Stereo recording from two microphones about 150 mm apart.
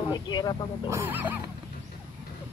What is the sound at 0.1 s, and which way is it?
Speech, 30° left (ahead or behind).